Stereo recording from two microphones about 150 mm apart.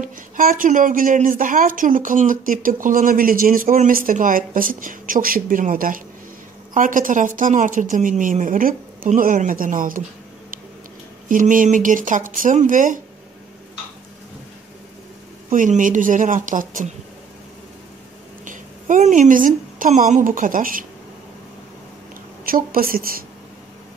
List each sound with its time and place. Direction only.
0.0 s speech: 65° right (ahead or behind)
11.2 s speech: 60° right (ahead or behind)
15.5 s speech: 60° right (ahead or behind)
18.4 s a woman's voice: 60° right (ahead or behind)
22.4 s a woman's voice: 70° right (ahead or behind)